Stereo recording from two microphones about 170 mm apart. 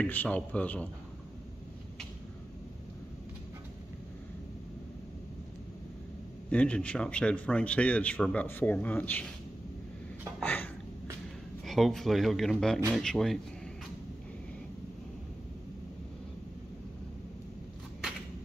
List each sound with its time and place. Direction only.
0.0 s speech: 10° left (ahead or behind)
6.5 s speech: 5° left (ahead or behind)
10.4 s a sound: 10° left (ahead or behind)
11.6 s speech: centre (ahead or behind)